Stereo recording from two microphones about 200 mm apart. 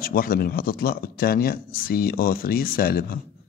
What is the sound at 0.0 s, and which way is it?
A man's voice, 45° left (ahead or behind).